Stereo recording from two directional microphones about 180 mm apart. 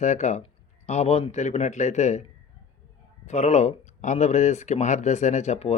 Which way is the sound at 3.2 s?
40° left (ahead or behind).